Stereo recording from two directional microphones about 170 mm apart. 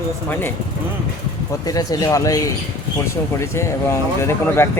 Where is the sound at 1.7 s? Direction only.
20° left (ahead or behind).